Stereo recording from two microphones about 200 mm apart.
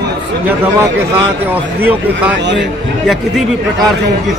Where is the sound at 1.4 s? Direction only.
10° right (ahead or behind).